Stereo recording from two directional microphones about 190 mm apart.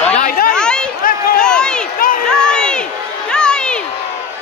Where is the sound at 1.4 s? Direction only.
5° left (ahead or behind).